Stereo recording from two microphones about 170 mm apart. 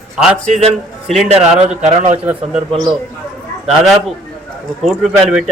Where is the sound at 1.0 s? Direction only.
Centre (ahead or behind).